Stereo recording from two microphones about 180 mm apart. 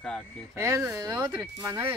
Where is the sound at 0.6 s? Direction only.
15° right (ahead or behind).